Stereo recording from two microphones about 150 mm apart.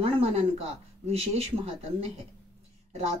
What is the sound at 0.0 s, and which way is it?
Speech, 40° right (ahead or behind).